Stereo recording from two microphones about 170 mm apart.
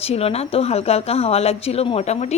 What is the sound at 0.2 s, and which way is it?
Speech, 35° left (ahead or behind).